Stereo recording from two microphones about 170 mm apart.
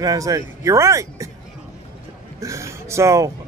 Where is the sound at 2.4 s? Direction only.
15° right (ahead or behind).